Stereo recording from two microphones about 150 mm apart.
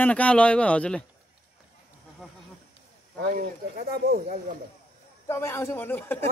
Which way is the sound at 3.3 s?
85° right.